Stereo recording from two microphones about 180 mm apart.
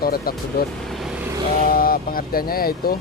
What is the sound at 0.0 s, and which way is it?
Speech, 55° left (ahead or behind).